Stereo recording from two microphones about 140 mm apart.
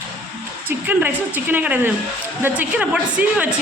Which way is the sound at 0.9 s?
15° right (ahead or behind).